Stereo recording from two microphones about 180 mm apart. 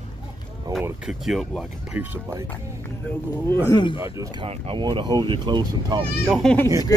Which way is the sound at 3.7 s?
25° left (ahead or behind).